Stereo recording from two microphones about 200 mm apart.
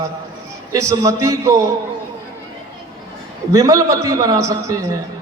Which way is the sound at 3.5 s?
15° right (ahead or behind).